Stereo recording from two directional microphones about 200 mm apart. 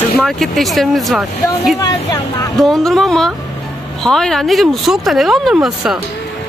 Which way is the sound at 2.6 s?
Centre (ahead or behind).